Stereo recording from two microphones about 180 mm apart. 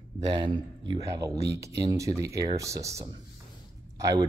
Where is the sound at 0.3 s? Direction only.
25° right (ahead or behind).